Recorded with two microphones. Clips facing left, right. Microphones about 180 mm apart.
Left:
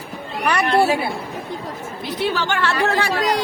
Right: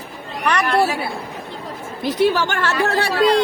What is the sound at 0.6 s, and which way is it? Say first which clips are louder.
Speech: left 2 dB; 30° left (ahead or behind).